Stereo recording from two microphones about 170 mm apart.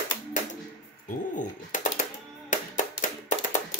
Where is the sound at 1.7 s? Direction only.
50° left (ahead or behind).